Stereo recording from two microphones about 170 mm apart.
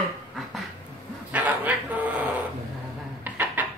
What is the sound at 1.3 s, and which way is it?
Dog, 10° right (ahead or behind).